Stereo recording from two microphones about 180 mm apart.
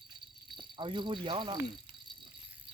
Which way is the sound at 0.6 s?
25° right (ahead or behind).